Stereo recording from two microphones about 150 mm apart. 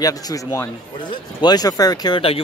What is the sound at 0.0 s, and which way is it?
Speech, 25° left (ahead or behind).